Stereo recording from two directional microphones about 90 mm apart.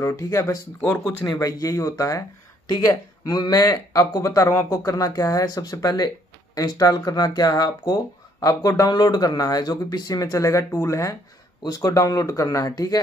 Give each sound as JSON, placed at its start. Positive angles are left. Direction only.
{"t": 0.0, "sound": "speech", "side_deg": 35}
{"t": 2.7, "sound": "speech", "side_deg": 50}